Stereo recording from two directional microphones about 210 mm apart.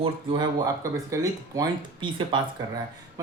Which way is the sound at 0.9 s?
15° right (ahead or behind).